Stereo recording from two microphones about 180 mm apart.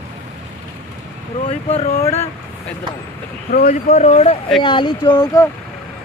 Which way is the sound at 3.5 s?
50° left (ahead or behind).